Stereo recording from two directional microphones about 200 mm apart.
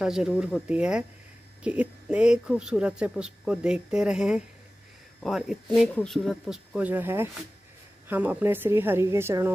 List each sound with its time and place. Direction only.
0.0 s a woman's voice: 5° right (ahead or behind)